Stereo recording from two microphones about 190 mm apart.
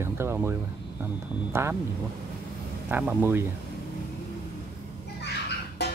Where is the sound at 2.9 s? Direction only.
10° right (ahead or behind).